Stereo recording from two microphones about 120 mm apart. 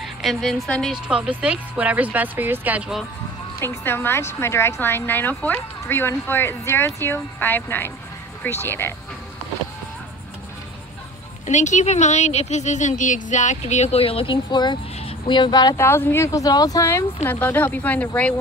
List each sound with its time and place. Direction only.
0.0 s a woman's voice: centre (ahead or behind)
0.9 s speech: 5° right (ahead or behind)
3.5 s speech: 20° left (ahead or behind)
11.4 s a woman's voice: 85° left; by 15.7 s 40° left (ahead or behind)
15.7 s speech: 20° left (ahead or behind)
16.3 s speech: 30° left (ahead or behind); by 18.3 s 10° left (ahead or behind)